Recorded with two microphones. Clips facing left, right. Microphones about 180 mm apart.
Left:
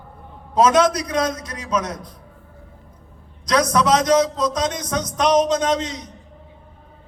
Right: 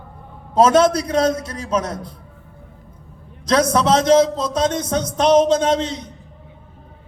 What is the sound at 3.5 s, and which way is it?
A man's voice, 30° right (ahead or behind).